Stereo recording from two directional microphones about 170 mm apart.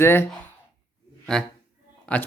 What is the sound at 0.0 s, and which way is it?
Speech, 15° left (ahead or behind).